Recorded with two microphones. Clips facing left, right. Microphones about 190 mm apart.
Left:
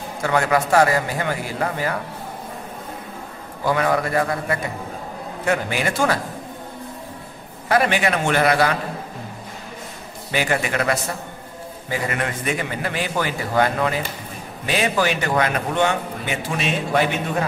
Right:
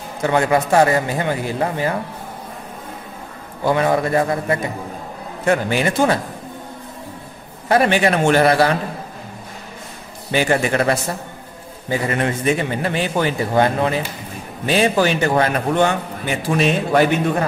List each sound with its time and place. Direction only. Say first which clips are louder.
0.2 s a man's voice: right 3 dB; 25° right (ahead or behind)
3.6 s a man's voice: right 3 dB; 25° right (ahead or behind)
7.6 s a man's voice: right 4 dB; 30° right (ahead or behind)
10.3 s a man's voice: right 5 dB; 30° right (ahead or behind)
12.1 s a man's voice: right 8 dB; 30° right (ahead or behind)
16.5 s a man's voice: right 5 dB; 45° right (ahead or behind)